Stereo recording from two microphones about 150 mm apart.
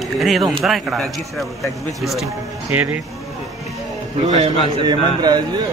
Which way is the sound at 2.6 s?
10° right (ahead or behind).